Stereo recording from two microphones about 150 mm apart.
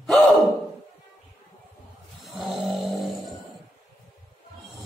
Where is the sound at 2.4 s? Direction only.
Centre (ahead or behind).